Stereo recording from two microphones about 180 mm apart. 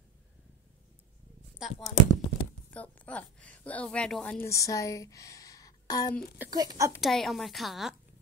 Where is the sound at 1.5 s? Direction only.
Centre (ahead or behind).